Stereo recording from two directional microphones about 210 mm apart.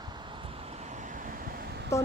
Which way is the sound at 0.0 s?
20° right (ahead or behind).